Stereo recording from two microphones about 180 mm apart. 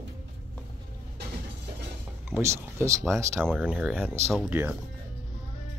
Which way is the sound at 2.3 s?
15° right (ahead or behind).